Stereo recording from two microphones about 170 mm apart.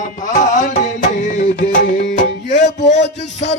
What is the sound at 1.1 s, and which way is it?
Music, 45° left (ahead or behind).